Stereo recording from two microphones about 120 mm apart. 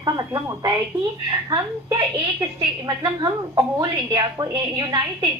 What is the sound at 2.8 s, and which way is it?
A woman's voice, 35° right (ahead or behind).